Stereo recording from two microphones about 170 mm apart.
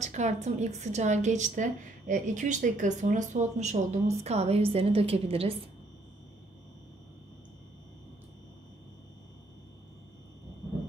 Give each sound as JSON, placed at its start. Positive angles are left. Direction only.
{"t": 0.0, "sound": "a woman's voice", "side_deg": -45}